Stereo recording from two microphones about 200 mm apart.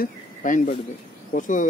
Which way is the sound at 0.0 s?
40° left (ahead or behind).